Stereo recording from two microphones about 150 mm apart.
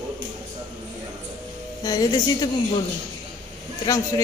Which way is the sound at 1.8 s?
25° left (ahead or behind).